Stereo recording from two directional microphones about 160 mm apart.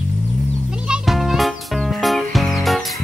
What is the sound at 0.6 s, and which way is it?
Music, 5° right (ahead or behind).